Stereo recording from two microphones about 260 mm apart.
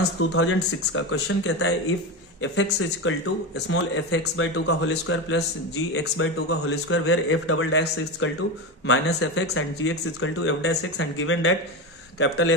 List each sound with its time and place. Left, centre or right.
0.3 s speech: left